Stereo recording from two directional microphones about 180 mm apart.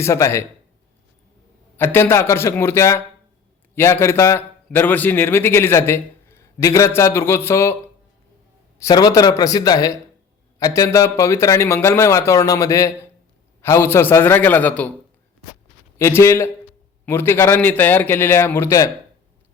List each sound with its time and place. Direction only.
0.0 s a man's voice: 15° left (ahead or behind)
1.7 s a man's voice: 10° left (ahead or behind)
8.8 s a man's voice: 20° left (ahead or behind)
16.0 s a man's voice: 15° left (ahead or behind)